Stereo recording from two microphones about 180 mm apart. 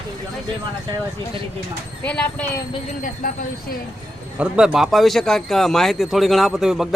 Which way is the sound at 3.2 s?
50° left (ahead or behind).